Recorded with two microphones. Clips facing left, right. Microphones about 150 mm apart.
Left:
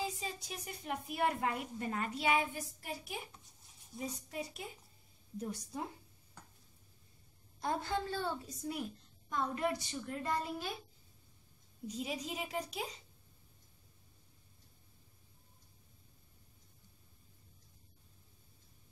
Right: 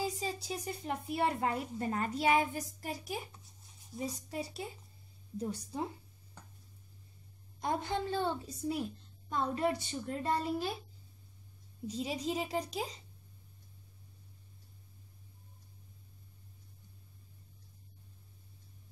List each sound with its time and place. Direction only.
0.2 s speech: 30° right (ahead or behind)
7.6 s a child's voice: 20° right (ahead or behind)
8.5 s a child's voice: 30° right (ahead or behind)
11.9 s speech: 30° right (ahead or behind)